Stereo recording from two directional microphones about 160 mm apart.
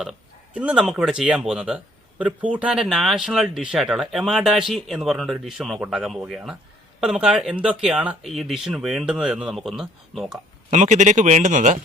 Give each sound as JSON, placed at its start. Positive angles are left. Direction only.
{"t": 0.0, "sound": "speech", "side_deg": -5}
{"t": 10.7, "sound": "speech", "side_deg": -50}